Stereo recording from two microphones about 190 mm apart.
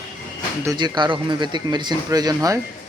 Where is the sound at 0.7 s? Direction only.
20° right (ahead or behind).